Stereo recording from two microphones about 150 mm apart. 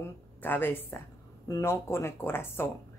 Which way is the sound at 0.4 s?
15° left (ahead or behind).